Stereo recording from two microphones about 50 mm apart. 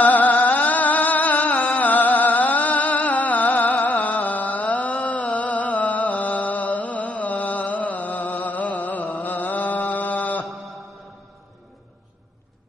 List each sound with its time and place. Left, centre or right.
0.0 s music: left
9.1 s mantra: left